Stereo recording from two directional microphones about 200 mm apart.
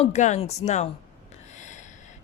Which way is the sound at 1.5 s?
35° left (ahead or behind).